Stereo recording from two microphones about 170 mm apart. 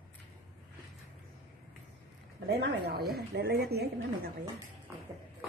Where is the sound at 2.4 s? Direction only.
65° right (ahead or behind).